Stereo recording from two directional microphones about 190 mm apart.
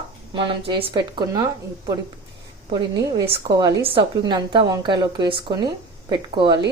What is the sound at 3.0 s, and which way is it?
Speech, 15° right (ahead or behind).